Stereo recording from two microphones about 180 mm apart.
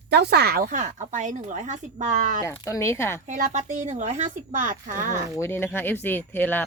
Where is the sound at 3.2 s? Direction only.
45° right (ahead or behind).